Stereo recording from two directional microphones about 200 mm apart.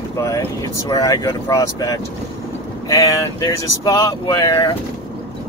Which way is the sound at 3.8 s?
20° left (ahead or behind).